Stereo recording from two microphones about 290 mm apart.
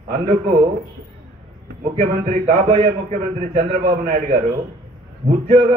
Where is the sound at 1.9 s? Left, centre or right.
Right.